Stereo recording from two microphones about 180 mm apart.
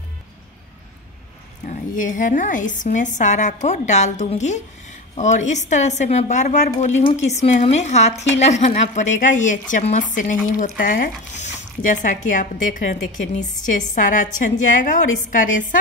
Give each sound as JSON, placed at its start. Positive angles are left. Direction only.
{"t": 1.7, "sound": "a woman's voice", "side_deg": 45}